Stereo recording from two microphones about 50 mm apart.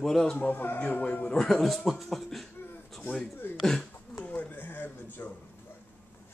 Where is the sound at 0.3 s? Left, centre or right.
Left.